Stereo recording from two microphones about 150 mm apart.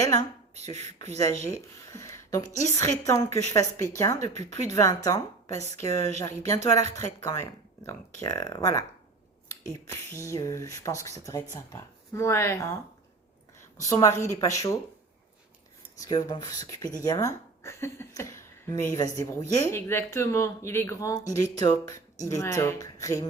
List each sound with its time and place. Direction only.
0.5 s speech: 45° right (ahead or behind)
1.9 s speech: 20° left (ahead or behind)
9.9 s speech: 20° left (ahead or behind)
13.9 s speech: 20° left (ahead or behind)
16.0 s speech: 25° left (ahead or behind)